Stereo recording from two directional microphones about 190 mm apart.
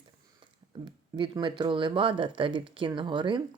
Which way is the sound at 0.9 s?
25° right (ahead or behind).